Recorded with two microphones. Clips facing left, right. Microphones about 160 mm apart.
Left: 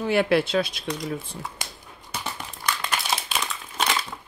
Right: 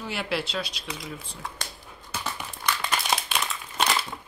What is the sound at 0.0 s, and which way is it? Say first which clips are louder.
Speech: left 9 dB; 55° left (ahead or behind).